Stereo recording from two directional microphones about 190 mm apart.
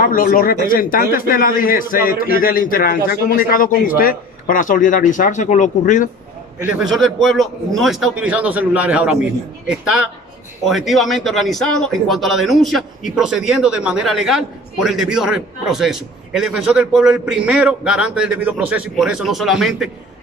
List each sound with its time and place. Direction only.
0.0 s a man's voice: 45° left (ahead or behind)
6.6 s speech: centre (ahead or behind)
10.7 s speech: centre (ahead or behind)